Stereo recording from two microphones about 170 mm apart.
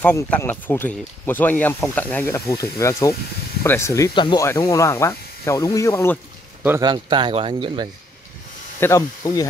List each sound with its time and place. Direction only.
0.0 s speech: 10° left (ahead or behind)
6.8 s speech: 25° right (ahead or behind)
8.7 s speech: 15° left (ahead or behind)